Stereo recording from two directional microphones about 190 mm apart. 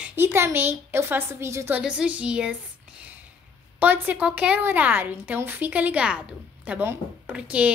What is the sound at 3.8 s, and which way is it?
A woman's voice, 10° right (ahead or behind).